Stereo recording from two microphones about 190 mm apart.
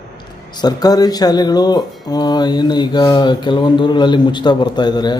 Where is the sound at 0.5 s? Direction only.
20° left (ahead or behind).